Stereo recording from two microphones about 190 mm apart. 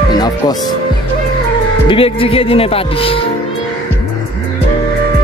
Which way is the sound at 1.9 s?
30° left (ahead or behind).